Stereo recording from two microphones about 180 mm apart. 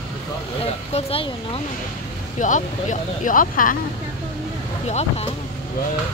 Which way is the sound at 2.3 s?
45° left (ahead or behind).